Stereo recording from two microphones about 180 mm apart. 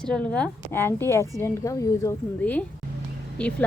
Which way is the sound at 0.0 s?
5° left (ahead or behind).